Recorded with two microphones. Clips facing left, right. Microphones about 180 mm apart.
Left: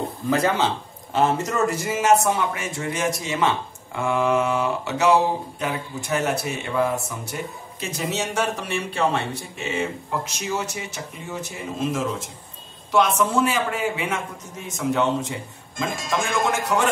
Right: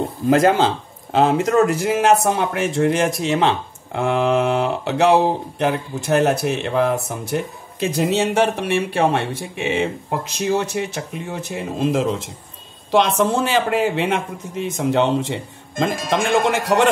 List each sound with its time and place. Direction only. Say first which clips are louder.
0.3 s speech: right 6 dB; 50° right (ahead or behind); by 3.4 s 90° right
3.9 s speech: right 3 dB; 70° right (ahead or behind)
7.2 s speech: right 7 dB; 60° right (ahead or behind)